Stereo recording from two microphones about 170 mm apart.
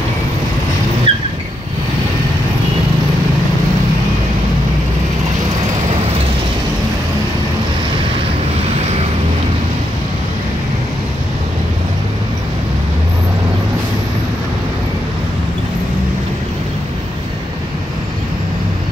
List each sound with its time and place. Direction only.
1.1 s vehicle: 35° right (ahead or behind)